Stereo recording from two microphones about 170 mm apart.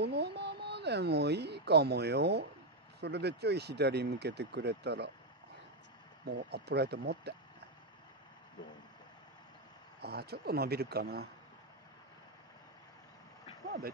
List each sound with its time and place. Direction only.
0.0 s speech: 80° right
6.2 s speech: 75° right (ahead or behind)
10.0 s speech: 70° right (ahead or behind)